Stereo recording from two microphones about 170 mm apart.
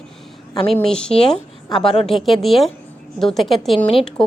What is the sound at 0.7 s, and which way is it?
A woman's voice, 5° left (ahead or behind).